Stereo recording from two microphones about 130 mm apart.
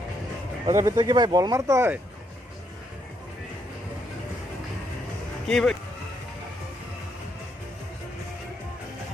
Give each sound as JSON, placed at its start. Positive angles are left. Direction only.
{"t": 0.6, "sound": "speech", "side_deg": -25}
{"t": 5.5, "sound": "speech", "side_deg": 5}